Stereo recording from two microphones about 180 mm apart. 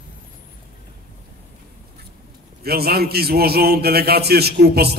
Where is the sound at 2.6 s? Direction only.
60° right (ahead or behind).